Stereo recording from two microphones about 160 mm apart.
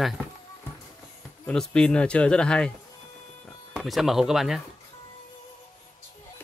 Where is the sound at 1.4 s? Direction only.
5° left (ahead or behind).